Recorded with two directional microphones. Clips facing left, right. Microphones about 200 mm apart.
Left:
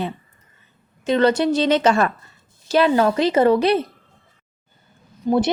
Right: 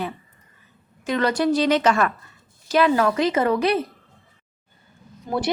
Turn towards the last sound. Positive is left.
turn(degrees=20)  # may be behind; listen again after turning